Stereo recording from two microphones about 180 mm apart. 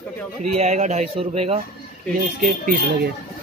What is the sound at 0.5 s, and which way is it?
A man's voice, 40° right (ahead or behind).